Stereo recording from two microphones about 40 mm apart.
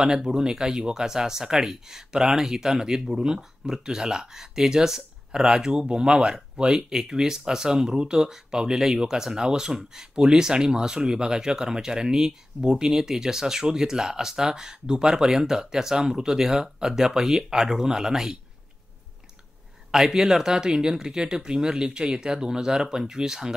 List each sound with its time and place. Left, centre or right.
0.0 s speech: centre
19.9 s speech: centre